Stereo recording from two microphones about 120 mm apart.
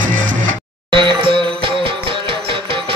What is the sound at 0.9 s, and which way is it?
Music, 40° right (ahead or behind).